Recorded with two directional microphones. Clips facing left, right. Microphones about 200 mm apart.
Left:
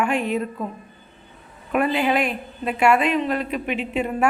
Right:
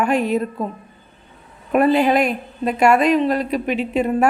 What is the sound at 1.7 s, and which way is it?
A woman's voice, 40° right (ahead or behind).